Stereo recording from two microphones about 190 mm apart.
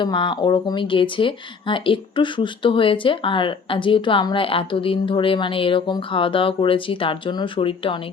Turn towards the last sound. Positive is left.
turn(degrees=30)  # may be behind; listen again after turning